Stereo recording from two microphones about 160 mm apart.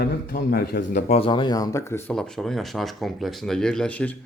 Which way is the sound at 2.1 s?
5° left (ahead or behind).